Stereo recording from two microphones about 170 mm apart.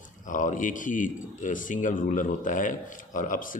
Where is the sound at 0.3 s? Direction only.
50° left (ahead or behind).